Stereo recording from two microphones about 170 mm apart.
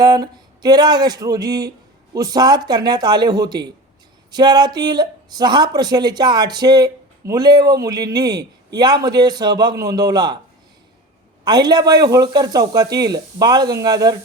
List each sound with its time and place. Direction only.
0.0 s speech: 25° right (ahead or behind)
11.4 s speech: 25° right (ahead or behind)